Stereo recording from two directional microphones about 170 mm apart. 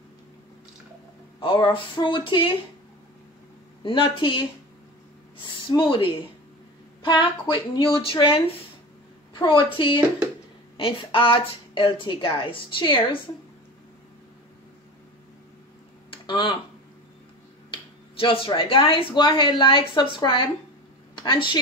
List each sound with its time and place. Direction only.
1.4 s speech: 30° left (ahead or behind)
3.8 s speech: 30° left (ahead or behind)
5.7 s speech: 30° left (ahead or behind)
10.8 s speech: 30° left (ahead or behind)
16.1 s typing: 25° left (ahead or behind)
18.2 s a woman's voice: 30° left (ahead or behind)